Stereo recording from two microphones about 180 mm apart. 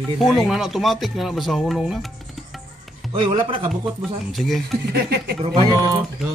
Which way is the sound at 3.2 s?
30° right (ahead or behind).